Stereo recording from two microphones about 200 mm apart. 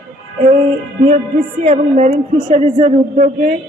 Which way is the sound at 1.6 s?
30° right (ahead or behind).